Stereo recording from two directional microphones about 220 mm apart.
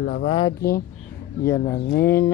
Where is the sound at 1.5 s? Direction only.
10° left (ahead or behind).